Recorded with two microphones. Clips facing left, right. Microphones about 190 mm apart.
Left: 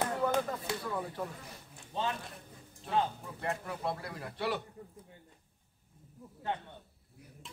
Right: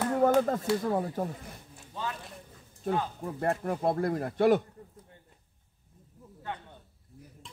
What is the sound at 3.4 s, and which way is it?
Speech, 50° right (ahead or behind).